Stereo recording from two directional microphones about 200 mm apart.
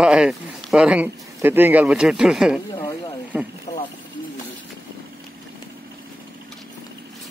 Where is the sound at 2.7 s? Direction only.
20° left (ahead or behind).